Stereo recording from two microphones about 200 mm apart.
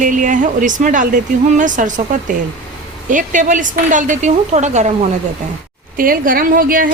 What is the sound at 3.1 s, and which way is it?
Speech, 40° right (ahead or behind).